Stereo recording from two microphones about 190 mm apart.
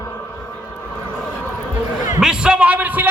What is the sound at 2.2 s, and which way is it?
Speech, 5° right (ahead or behind).